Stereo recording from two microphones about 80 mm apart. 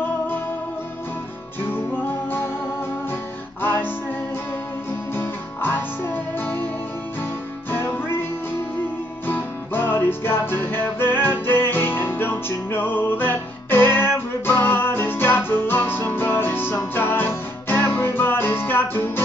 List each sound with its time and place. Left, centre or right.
1.6 s music: left
3.6 s music: left
5.1 s music: left
7.7 s music: left
9.2 s music: left